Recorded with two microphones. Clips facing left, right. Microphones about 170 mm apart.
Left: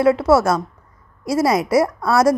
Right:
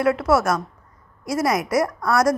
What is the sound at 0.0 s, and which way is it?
A woman's voice, 30° left (ahead or behind).